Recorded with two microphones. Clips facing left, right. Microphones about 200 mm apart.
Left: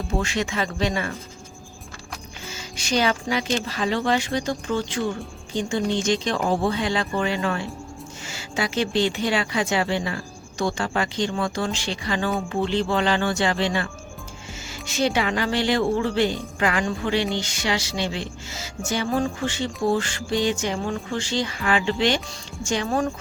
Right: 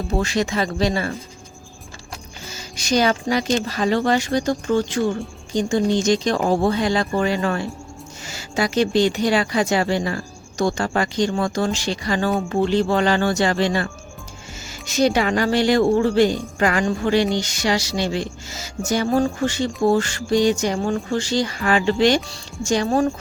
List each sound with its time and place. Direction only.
0.2 s music: 40° right (ahead or behind)
2.5 s speech: 40° right (ahead or behind)
5.5 s music: 40° right (ahead or behind)
14.8 s music: 40° right (ahead or behind)
16.6 s speech: 45° right (ahead or behind)
17.3 s music: 40° right (ahead or behind)